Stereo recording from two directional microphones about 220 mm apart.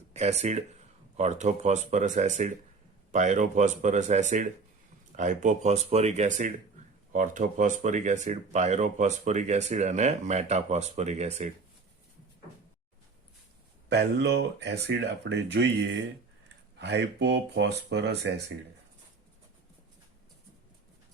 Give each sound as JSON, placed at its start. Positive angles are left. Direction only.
{"t": 0.1, "sound": "speech", "side_deg": -30}
{"t": 13.9, "sound": "speech", "side_deg": -50}